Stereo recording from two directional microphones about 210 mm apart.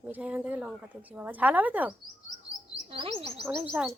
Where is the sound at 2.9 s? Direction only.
30° right (ahead or behind).